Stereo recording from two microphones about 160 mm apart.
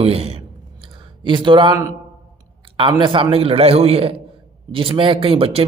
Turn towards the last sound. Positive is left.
turn(degrees=-35)  # may be behind; listen again after turning